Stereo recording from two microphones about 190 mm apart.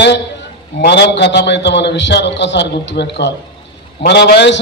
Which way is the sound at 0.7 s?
65° left (ahead or behind).